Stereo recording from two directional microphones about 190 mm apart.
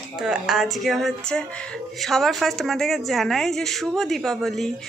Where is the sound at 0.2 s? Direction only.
5° right (ahead or behind).